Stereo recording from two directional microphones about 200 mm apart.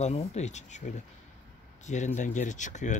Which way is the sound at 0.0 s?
35° left (ahead or behind).